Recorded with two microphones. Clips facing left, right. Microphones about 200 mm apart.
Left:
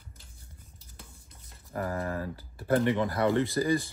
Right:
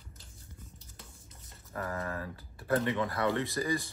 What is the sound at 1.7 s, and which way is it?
Speech, 30° left (ahead or behind).